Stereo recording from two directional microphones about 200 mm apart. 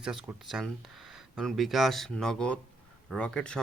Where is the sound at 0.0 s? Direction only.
5° right (ahead or behind).